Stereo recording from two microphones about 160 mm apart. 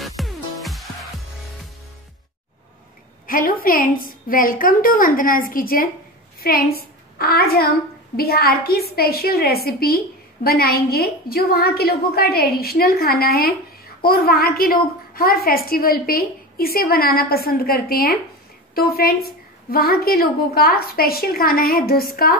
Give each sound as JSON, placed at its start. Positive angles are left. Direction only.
{"t": 0.0, "sound": "music", "side_deg": 0}
{"t": 3.3, "sound": "a woman's voice", "side_deg": 60}